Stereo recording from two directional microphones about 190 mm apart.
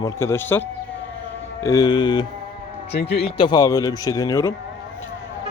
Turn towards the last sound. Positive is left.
turn(degrees=15)  # may be behind; listen again after turning